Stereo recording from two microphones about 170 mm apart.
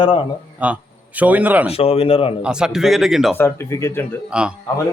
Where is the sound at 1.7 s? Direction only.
35° left (ahead or behind).